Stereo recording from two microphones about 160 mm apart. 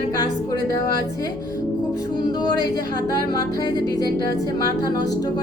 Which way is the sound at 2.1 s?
25° left (ahead or behind).